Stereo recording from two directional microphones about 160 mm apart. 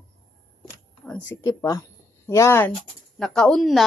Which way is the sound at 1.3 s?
20° left (ahead or behind).